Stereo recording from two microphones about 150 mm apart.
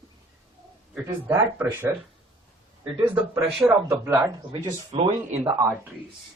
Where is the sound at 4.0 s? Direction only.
15° right (ahead or behind).